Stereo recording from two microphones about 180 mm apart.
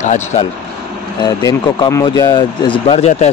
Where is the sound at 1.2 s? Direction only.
20° left (ahead or behind).